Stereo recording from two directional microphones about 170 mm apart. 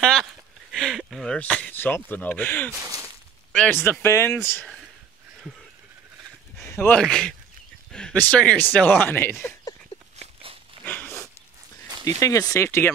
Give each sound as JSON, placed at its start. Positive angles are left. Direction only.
{"t": 0.0, "sound": "speech", "side_deg": 0}
{"t": 6.6, "sound": "speech", "side_deg": 15}
{"t": 10.1, "sound": "walk", "side_deg": -35}
{"t": 12.0, "sound": "speech", "side_deg": 20}